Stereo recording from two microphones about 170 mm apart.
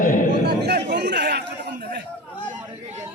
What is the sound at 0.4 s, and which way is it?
Chatter, 75° right (ahead or behind).